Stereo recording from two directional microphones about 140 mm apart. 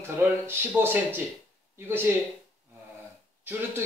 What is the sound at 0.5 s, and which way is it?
Speech, 15° right (ahead or behind).